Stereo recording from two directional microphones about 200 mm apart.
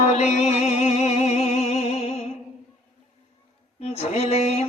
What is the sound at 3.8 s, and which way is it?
Mantra, 30° left (ahead or behind).